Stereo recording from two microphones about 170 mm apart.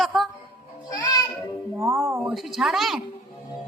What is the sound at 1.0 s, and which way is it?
Music, 20° left (ahead or behind).